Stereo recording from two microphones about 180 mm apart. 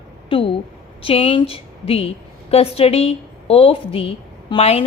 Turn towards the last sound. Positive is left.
turn(degrees=35)  # may be behind; listen again after turning